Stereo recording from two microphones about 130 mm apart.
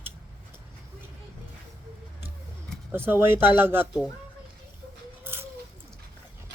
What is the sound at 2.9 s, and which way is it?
Speech, 20° right (ahead or behind).